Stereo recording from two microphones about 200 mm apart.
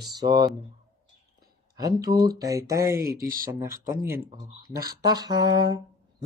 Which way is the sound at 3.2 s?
45° right (ahead or behind).